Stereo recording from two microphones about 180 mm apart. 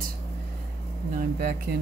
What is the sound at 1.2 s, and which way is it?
Speech, 50° right (ahead or behind).